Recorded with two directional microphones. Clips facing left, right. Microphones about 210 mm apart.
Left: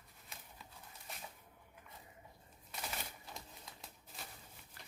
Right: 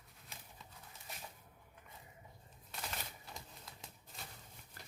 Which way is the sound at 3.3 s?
Centre (ahead or behind).